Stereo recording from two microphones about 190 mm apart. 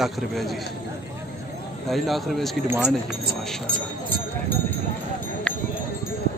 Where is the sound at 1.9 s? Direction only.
Centre (ahead or behind).